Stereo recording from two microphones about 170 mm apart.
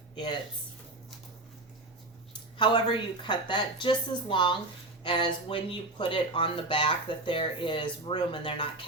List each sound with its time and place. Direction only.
2.6 s speech: 30° left (ahead or behind)